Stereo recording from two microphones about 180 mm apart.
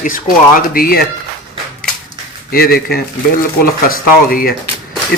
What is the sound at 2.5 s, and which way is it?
A man's voice, 55° left (ahead or behind).